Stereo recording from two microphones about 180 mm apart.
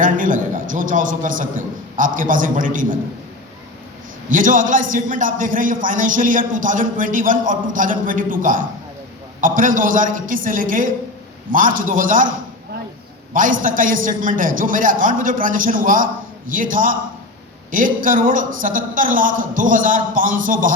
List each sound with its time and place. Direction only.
0.0 s a man's voice: 45° right (ahead or behind)
4.3 s a man's voice: 45° right (ahead or behind)
13.3 s a man's voice: 50° right (ahead or behind)